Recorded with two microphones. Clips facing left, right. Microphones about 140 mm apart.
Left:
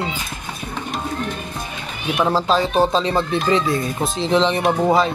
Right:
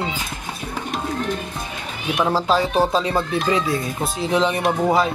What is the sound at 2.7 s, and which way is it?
Speech, 20° left (ahead or behind).